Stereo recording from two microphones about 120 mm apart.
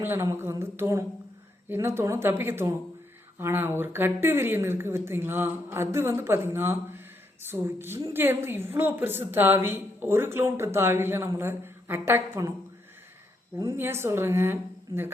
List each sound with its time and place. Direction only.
0.0 s a woman's voice: 20° right (ahead or behind)
13.6 s a woman's voice: 25° right (ahead or behind)